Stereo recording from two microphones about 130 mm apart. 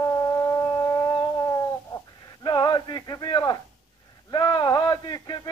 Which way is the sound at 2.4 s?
35° left (ahead or behind).